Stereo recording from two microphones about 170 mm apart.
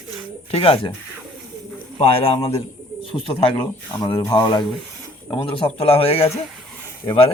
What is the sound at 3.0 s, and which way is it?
Speech, 30° left (ahead or behind).